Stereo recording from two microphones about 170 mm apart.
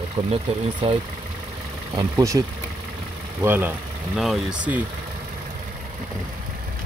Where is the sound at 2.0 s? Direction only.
20° right (ahead or behind).